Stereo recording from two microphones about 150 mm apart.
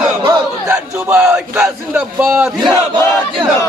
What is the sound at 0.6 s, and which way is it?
Speech, 10° right (ahead or behind).